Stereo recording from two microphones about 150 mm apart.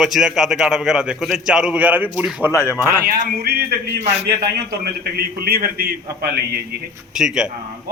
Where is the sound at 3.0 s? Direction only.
70° right (ahead or behind); by 3.8 s 90° right.